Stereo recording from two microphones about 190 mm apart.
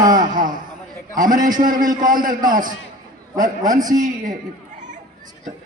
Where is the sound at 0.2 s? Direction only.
45° right (ahead or behind).